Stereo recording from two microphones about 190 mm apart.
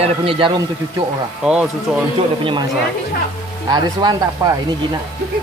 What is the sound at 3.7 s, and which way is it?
Speech, 20° right (ahead or behind).